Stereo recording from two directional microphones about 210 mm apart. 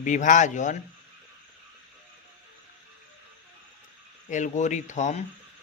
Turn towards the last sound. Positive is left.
turn(degrees=35)  # may be behind; listen again after turning